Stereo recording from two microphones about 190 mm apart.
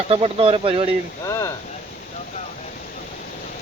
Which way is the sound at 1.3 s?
15° left (ahead or behind).